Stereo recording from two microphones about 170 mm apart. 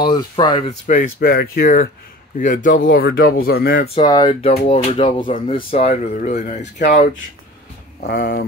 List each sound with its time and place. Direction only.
0.0 s speech: 25° left (ahead or behind)
0.7 s speech: 55° left (ahead or behind)
2.3 s speech: 50° left (ahead or behind)
3.9 s speech: 25° left (ahead or behind); by 7.1 s 45° left (ahead or behind)
8.0 s speech: 65° left (ahead or behind)